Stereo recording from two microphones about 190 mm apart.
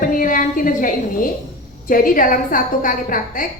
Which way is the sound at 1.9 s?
45° left (ahead or behind).